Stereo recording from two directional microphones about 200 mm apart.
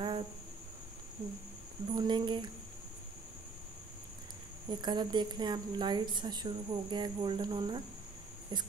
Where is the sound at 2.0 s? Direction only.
20° right (ahead or behind).